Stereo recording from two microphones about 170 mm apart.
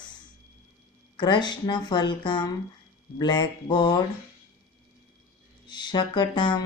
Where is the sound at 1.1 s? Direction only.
25° left (ahead or behind).